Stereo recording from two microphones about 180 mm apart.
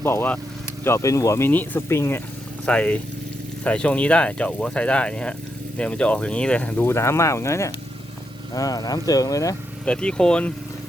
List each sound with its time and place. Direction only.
0.0 s speech: 10° left (ahead or behind)
9.8 s speech: 5° left (ahead or behind)